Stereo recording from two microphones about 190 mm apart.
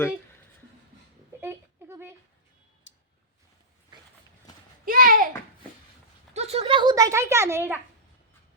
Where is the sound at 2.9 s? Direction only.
70° left (ahead or behind).